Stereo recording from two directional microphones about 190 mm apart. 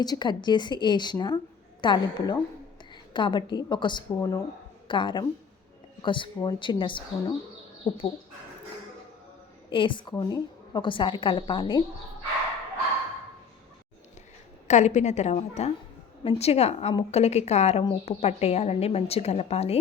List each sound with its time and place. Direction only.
0.0 s a woman's voice: 20° left (ahead or behind)
9.7 s a woman's voice: 25° left (ahead or behind)
14.7 s a woman's voice: 40° left (ahead or behind)